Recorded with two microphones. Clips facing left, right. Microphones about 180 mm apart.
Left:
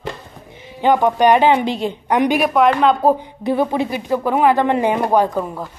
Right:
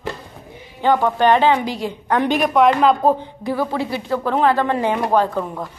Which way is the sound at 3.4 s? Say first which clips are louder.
Left 5 dB; 20° left (ahead or behind).